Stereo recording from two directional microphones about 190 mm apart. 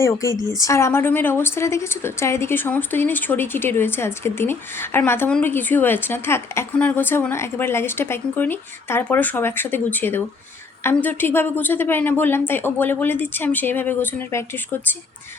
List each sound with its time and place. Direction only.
0.0 s speech: 15° left (ahead or behind)